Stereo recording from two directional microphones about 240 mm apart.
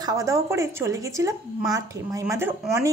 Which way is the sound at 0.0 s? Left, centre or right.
Centre.